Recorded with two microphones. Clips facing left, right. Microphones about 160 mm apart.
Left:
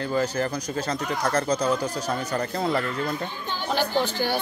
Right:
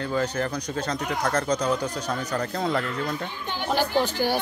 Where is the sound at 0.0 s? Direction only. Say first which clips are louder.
Left 1 dB; centre (ahead or behind).